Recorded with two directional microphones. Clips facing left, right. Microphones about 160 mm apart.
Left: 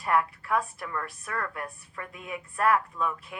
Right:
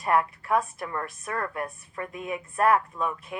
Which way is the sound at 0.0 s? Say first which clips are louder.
Right 2 dB; 20° right (ahead or behind).